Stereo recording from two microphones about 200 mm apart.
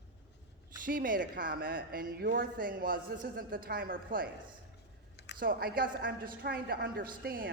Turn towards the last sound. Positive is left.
turn(degrees=-50)  # may be behind; listen again after turning